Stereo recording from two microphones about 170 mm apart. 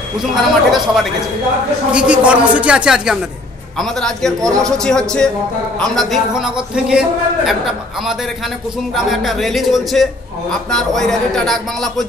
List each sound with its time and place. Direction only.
0.2 s a man's voice: 5° right (ahead or behind)
1.9 s a man's voice: 5° right (ahead or behind)